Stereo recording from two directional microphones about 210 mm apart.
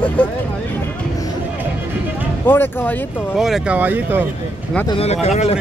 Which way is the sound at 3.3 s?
5° right (ahead or behind).